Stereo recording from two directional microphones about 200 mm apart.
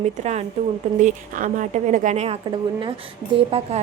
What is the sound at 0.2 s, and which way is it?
A woman's voice, 35° right (ahead or behind).